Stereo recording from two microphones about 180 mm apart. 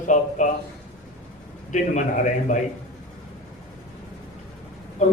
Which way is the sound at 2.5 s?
45° left (ahead or behind).